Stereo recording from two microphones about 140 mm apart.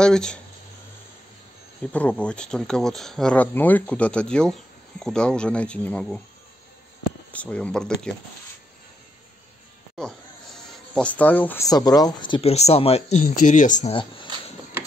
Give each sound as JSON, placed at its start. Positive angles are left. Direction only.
{"t": 0.0, "sound": "speech", "side_deg": 5}
{"t": 1.9, "sound": "speech", "side_deg": 10}
{"t": 7.3, "sound": "speech", "side_deg": 10}
{"t": 9.9, "sound": "a sound", "side_deg": 5}
{"t": 11.6, "sound": "speech", "side_deg": 25}
{"t": 13.2, "sound": "speech", "side_deg": 65}
{"t": 13.9, "sound": "speech", "side_deg": 35}